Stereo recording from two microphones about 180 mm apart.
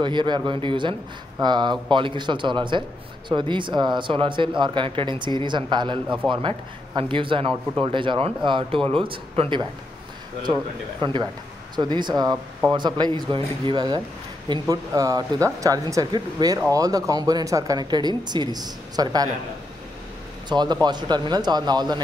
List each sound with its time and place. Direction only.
0.0 s speech: 25° right (ahead or behind)
6.0 s speech: 5° right (ahead or behind)
7.0 s speech: 30° right (ahead or behind)
11.0 s speech: 25° right (ahead or behind)
20.4 s speech: 25° right (ahead or behind)